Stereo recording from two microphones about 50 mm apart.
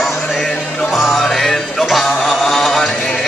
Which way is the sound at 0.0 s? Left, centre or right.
Centre.